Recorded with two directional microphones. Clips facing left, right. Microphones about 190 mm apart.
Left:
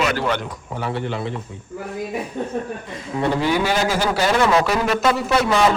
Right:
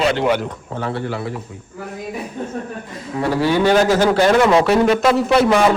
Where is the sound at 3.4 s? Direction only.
10° left (ahead or behind).